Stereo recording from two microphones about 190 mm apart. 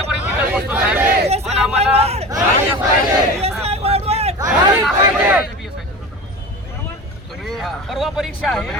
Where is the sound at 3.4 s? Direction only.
35° right (ahead or behind).